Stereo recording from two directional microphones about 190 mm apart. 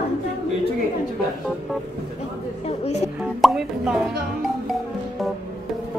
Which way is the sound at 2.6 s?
35° left (ahead or behind).